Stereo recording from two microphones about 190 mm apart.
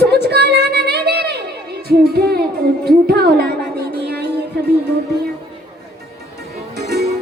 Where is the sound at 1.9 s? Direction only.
55° right (ahead or behind).